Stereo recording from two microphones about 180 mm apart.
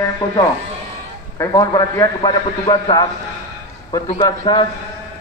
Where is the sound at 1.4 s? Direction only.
20° left (ahead or behind).